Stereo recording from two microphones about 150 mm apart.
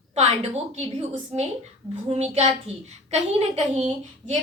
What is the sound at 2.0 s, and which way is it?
A woman's voice, 45° right (ahead or behind).